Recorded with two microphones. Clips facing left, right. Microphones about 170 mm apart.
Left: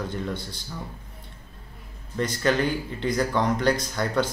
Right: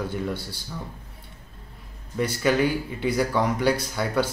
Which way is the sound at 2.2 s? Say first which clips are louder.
Right 2 dB; 10° right (ahead or behind).